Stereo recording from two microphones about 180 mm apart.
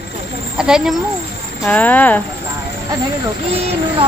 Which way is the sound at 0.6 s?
5° right (ahead or behind).